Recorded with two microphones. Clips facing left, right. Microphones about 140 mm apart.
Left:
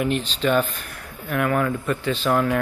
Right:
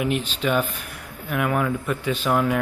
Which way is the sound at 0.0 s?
10° right (ahead or behind).